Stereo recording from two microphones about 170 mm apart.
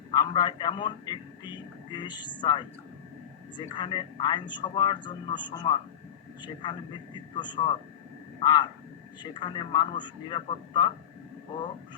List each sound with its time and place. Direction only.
0.1 s a man's voice: 25° left (ahead or behind)
3.8 s a man's voice: 25° left (ahead or behind)